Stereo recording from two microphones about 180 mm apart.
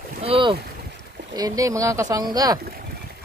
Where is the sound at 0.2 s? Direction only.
30° right (ahead or behind).